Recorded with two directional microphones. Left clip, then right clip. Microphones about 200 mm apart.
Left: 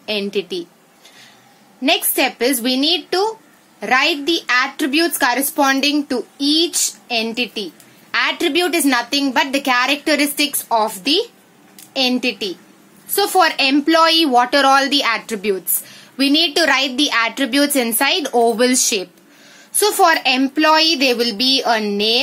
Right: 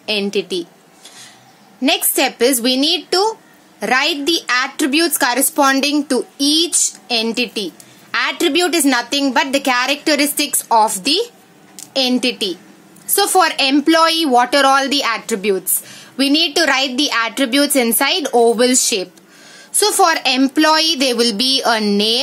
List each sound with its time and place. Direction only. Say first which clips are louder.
0.0 s a woman's voice: right 2 dB; 10° right (ahead or behind)
1.8 s a woman's voice: right 1 dB; 15° right (ahead or behind)